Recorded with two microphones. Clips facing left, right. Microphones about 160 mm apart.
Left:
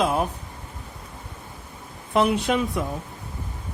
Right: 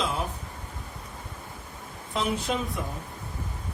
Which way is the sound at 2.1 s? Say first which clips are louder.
Left 7 dB; 70° left (ahead or behind).